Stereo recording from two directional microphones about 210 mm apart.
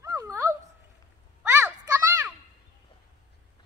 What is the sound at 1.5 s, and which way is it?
Children playing, 10° right (ahead or behind).